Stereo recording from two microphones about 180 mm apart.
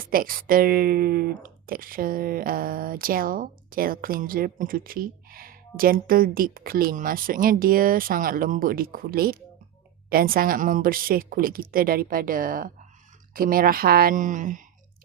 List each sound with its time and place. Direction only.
0.0 s speech: 55° right (ahead or behind)